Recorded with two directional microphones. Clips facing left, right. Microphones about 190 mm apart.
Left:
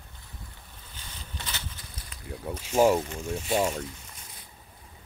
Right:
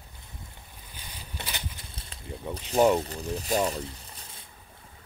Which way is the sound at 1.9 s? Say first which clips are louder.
Right 1 dB; 30° right (ahead or behind).